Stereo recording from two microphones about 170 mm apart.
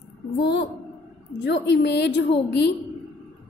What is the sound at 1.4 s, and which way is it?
Speech, 90° left.